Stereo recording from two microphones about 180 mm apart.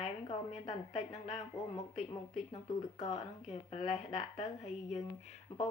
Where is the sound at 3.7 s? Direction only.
35° left (ahead or behind).